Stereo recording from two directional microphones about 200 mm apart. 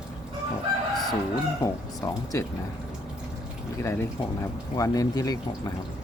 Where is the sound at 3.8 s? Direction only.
10° left (ahead or behind).